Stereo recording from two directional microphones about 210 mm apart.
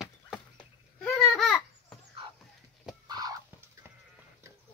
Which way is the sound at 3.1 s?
20° right (ahead or behind).